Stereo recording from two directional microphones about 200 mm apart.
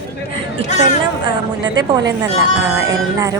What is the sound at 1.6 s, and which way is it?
Speech, 20° right (ahead or behind).